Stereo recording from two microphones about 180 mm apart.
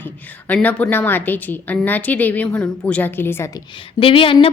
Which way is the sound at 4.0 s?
30° left (ahead or behind).